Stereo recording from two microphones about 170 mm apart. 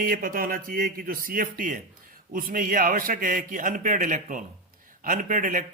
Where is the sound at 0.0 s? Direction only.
55° right (ahead or behind).